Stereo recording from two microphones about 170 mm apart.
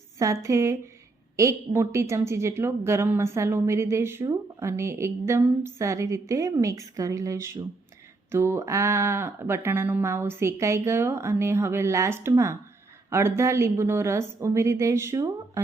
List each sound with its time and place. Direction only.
0.2 s a woman's voice: 20° right (ahead or behind)